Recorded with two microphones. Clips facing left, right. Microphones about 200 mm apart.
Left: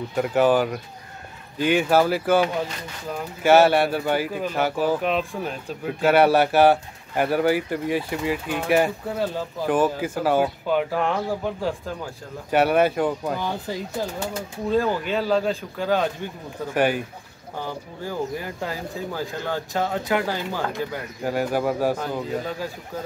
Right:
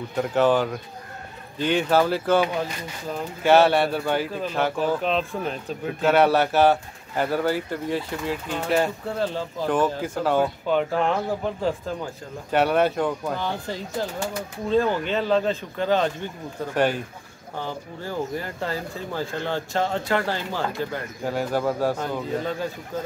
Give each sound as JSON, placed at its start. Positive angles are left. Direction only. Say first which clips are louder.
{"t": 0.1, "sound": "speech", "louder": "left 1 dB", "side_deg": 10}
{"t": 3.4, "sound": "speech", "louder": "left 1 dB", "side_deg": 5}